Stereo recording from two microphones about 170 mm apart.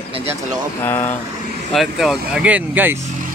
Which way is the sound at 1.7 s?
Centre (ahead or behind).